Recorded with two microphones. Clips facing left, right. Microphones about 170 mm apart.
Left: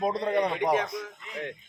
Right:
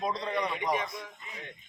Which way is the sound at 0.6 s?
65° left (ahead or behind).